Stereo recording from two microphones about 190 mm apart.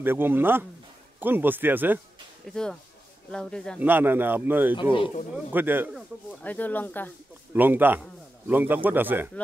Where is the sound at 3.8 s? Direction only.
10° right (ahead or behind).